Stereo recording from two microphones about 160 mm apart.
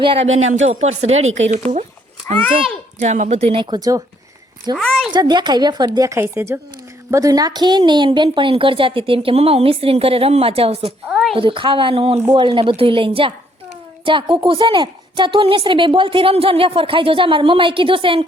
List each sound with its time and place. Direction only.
0.0 s speech: 35° right (ahead or behind)
3.0 s a woman's voice: 45° right (ahead or behind); by 4.0 s 25° right (ahead or behind)
4.8 s a woman's voice: centre (ahead or behind)
5.1 s a woman's voice: 30° right (ahead or behind)
11.1 s a sound: centre (ahead or behind)
11.3 s a woman's voice: 30° right (ahead or behind)